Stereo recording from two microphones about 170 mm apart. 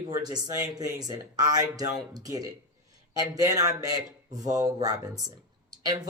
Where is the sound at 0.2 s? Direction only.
25° right (ahead or behind).